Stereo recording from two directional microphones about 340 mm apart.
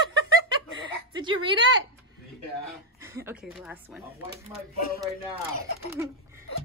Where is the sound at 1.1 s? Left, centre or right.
Centre.